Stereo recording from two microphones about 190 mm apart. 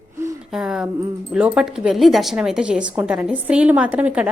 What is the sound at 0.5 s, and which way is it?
A woman's voice, 5° right (ahead or behind).